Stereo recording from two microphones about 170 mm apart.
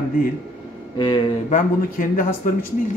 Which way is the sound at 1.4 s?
50° left (ahead or behind).